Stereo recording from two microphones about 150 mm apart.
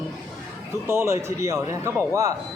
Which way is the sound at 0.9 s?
15° right (ahead or behind).